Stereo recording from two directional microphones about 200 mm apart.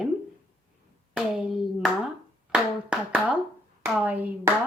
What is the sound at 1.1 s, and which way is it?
A woman's voice, centre (ahead or behind).